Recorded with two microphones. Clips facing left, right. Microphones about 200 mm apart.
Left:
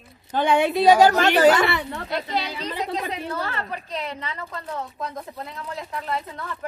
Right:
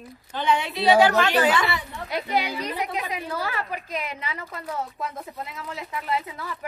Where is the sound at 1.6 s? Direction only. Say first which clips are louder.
Left 5 dB; 65° left (ahead or behind).